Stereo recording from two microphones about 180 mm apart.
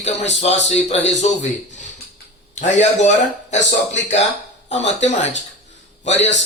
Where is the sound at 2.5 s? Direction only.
40° left (ahead or behind).